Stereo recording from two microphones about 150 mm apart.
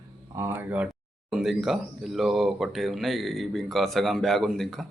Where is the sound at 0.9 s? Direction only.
Centre (ahead or behind).